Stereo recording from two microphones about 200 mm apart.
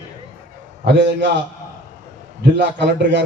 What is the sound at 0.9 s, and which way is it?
Speech, 60° right (ahead or behind).